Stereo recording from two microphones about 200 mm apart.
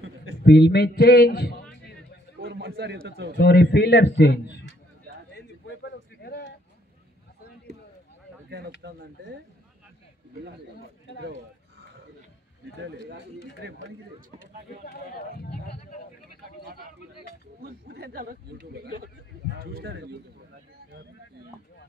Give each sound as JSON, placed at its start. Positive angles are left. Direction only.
{"t": 0.4, "sound": "a man's voice", "side_deg": 55}
{"t": 2.4, "sound": "a man's voice", "side_deg": -55}
{"t": 3.3, "sound": "a man's voice", "side_deg": 55}
{"t": 5.3, "sound": "a sound", "side_deg": 55}
{"t": 8.5, "sound": "speech", "side_deg": -55}
{"t": 12.7, "sound": "speech", "side_deg": -60}
{"t": 14.4, "sound": "speech", "side_deg": 50}
{"t": 17.6, "sound": "a man's voice", "side_deg": -50}